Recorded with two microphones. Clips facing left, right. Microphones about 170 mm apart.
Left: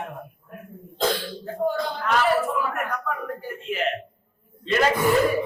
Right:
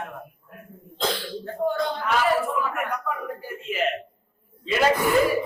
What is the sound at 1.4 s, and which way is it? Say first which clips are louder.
A man's voice: right 1 dB; centre (ahead or behind).